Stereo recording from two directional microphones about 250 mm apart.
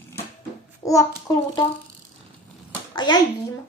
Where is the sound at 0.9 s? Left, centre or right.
Centre.